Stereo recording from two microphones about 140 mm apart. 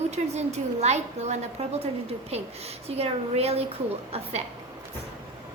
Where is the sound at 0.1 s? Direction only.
55° right (ahead or behind).